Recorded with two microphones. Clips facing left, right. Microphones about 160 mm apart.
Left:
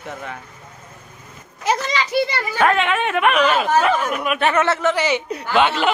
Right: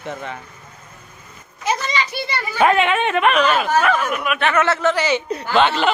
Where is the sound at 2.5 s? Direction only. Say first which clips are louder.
Right 2 dB; 5° right (ahead or behind); by 3.6 s 15° left (ahead or behind).